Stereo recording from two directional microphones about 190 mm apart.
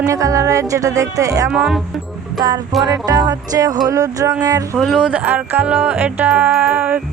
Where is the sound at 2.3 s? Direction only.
20° right (ahead or behind).